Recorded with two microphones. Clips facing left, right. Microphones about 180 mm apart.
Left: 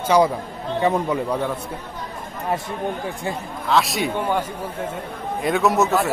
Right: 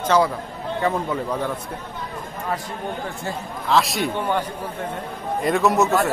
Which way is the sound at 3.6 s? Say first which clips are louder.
Even; centre (ahead or behind).